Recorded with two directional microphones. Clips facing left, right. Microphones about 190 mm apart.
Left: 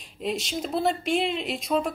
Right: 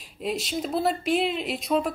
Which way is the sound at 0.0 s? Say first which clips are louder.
Even; centre (ahead or behind).